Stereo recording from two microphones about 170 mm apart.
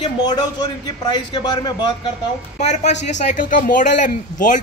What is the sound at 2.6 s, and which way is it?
Speech, 45° left (ahead or behind).